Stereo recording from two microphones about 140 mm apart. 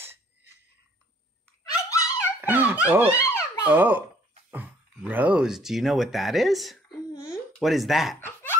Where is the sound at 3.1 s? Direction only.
20° left (ahead or behind).